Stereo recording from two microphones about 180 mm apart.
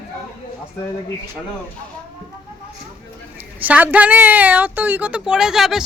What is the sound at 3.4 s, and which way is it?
A woman's voice, 10° right (ahead or behind).